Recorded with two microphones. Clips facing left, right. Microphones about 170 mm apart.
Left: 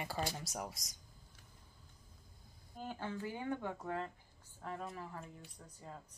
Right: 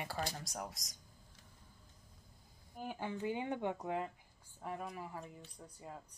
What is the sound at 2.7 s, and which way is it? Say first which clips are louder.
Speech: right 1 dB; 15° right (ahead or behind).